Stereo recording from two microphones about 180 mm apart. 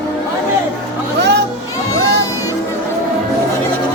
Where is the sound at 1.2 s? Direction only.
70° right (ahead or behind).